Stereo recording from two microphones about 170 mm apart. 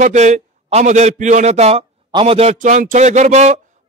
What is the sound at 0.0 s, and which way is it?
A man's voice, 45° right (ahead or behind).